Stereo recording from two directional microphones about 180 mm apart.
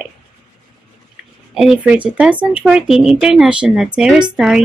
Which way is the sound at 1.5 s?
5° right (ahead or behind).